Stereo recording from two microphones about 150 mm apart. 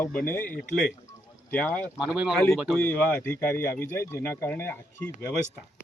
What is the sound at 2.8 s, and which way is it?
Speech, 10° left (ahead or behind).